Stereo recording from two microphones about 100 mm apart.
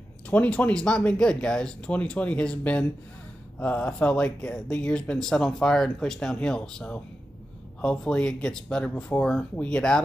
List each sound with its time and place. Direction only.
0.3 s speech: 15° left (ahead or behind)